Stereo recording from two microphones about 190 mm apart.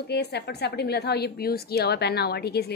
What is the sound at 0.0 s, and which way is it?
A woman's voice, 60° left (ahead or behind).